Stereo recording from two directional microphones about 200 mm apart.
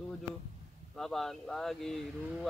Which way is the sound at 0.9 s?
Centre (ahead or behind).